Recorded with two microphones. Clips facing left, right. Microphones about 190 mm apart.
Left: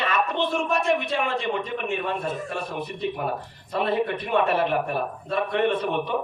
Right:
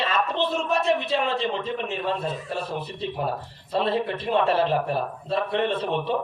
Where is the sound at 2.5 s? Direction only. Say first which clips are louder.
Even; 30° right (ahead or behind).